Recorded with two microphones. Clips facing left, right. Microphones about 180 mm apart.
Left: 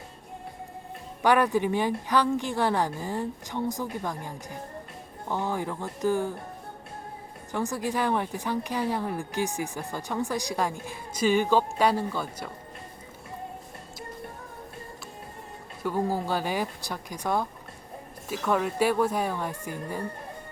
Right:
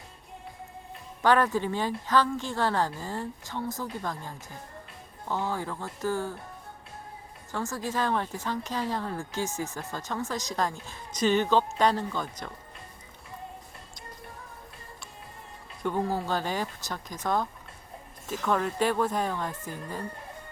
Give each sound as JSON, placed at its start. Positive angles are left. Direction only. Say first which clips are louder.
{"t": 1.2, "sound": "speech", "louder": "left 1 dB", "side_deg": 15}
{"t": 7.5, "sound": "speech", "louder": "left 3 dB", "side_deg": 15}
{"t": 15.8, "sound": "speech", "louder": "left 1 dB", "side_deg": 10}